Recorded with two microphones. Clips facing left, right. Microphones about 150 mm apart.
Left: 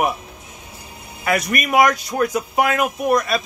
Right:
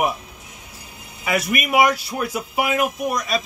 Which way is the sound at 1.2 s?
5° right (ahead or behind).